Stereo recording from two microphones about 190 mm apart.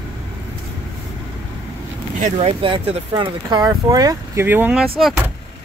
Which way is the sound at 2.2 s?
30° right (ahead or behind).